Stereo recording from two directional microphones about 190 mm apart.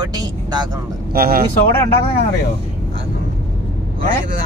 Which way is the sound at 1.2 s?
50° right (ahead or behind).